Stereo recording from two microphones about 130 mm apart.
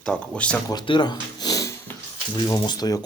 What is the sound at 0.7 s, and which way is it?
Speech, 35° left (ahead or behind).